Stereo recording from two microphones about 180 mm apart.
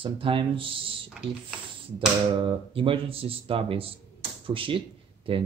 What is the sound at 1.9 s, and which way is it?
Speech, 30° right (ahead or behind).